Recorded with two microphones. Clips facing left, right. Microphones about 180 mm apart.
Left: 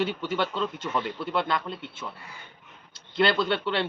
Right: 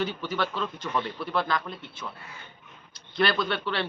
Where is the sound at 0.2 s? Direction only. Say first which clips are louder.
Left 2 dB; 25° left (ahead or behind).